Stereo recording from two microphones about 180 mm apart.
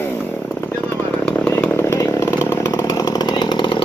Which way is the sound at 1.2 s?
10° left (ahead or behind).